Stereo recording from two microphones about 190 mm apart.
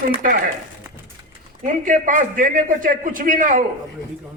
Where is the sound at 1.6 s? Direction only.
40° right (ahead or behind).